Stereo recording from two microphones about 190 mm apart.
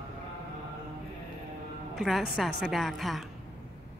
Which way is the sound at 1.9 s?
Centre (ahead or behind).